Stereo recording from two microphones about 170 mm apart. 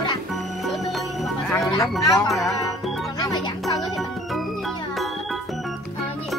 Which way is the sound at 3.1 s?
20° left (ahead or behind).